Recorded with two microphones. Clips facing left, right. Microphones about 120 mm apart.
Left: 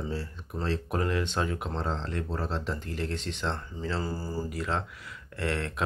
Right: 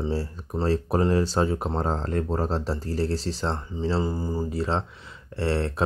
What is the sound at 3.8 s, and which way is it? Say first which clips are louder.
Mantra: right 6 dB; 25° right (ahead or behind).